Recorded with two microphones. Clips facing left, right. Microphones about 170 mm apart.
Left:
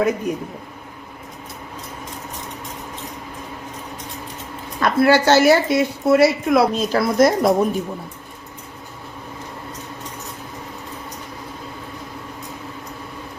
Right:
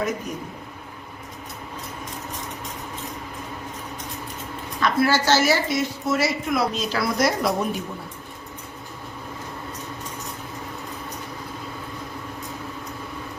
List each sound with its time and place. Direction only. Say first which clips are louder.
4.8 s a woman's voice: left 5 dB; 55° left (ahead or behind)